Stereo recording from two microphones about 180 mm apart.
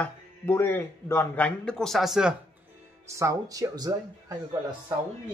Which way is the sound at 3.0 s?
15° right (ahead or behind).